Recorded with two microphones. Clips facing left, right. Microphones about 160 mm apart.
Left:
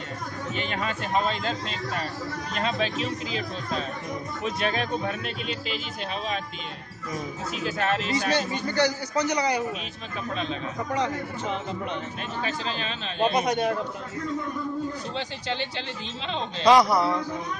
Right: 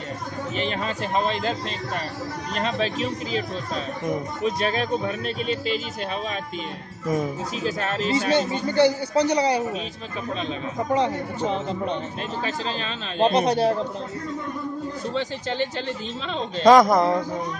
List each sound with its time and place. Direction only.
0.6 s a man's voice: 35° right (ahead or behind)
2.5 s a man's voice: 40° right (ahead or behind)
7.6 s a man's voice: 35° right (ahead or behind)
15.1 s a man's voice: 40° right (ahead or behind)